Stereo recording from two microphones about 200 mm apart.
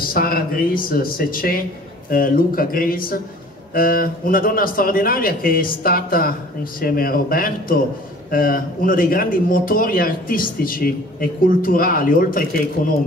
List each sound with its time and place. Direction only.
0.0 s a man's voice: 45° left (ahead or behind)